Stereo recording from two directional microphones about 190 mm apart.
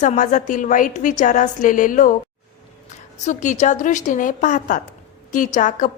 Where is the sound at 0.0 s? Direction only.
40° left (ahead or behind).